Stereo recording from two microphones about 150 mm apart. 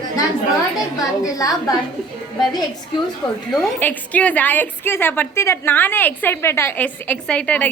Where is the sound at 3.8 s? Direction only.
10° left (ahead or behind).